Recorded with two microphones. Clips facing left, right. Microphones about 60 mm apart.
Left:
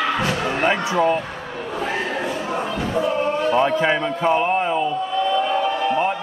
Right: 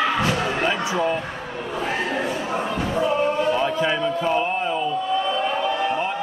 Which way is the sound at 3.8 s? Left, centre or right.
Left.